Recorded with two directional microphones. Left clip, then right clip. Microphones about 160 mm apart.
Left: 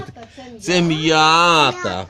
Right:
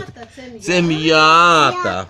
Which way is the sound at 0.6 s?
45° left (ahead or behind).